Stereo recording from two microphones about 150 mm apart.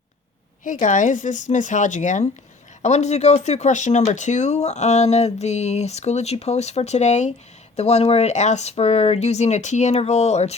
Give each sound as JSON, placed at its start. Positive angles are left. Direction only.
{"t": 0.6, "sound": "speech", "side_deg": 55}